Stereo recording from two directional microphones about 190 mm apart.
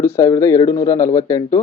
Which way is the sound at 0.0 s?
15° left (ahead or behind).